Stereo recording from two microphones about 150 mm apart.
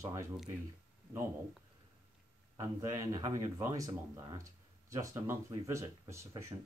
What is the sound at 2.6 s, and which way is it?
Speech, 20° right (ahead or behind).